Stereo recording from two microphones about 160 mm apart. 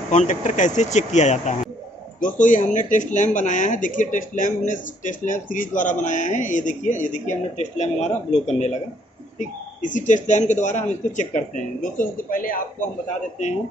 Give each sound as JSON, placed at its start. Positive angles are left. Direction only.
{"t": 0.1, "sound": "speech", "side_deg": 45}
{"t": 9.8, "sound": "speech", "side_deg": 50}